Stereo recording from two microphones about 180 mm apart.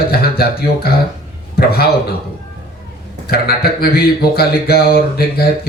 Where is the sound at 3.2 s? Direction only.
60° left (ahead or behind).